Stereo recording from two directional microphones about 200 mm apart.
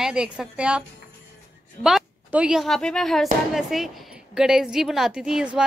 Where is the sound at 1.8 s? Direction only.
5° right (ahead or behind).